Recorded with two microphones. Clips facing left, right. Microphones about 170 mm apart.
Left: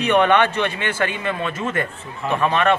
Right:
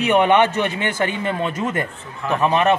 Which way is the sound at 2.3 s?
15° right (ahead or behind).